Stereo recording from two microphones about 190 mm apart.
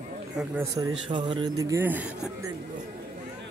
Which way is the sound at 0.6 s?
20° right (ahead or behind).